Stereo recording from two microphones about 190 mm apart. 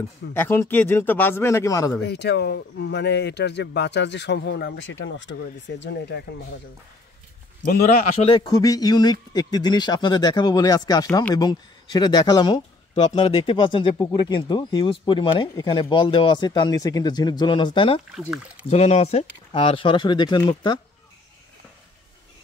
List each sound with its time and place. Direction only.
0.3 s speech: 10° left (ahead or behind)
2.0 s speech: 60° left (ahead or behind)
7.6 s a man's voice: 50° left (ahead or behind)
8.2 s speech: 25° left (ahead or behind)
12.9 s speech: 30° left (ahead or behind)
18.1 s speech: 5° right (ahead or behind)
18.7 s speech: 35° left (ahead or behind)